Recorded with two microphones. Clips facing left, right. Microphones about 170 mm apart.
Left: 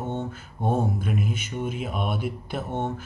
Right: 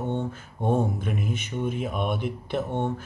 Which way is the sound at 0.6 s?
Centre (ahead or behind).